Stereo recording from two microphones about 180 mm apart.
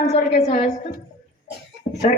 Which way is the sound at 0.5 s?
50° left (ahead or behind).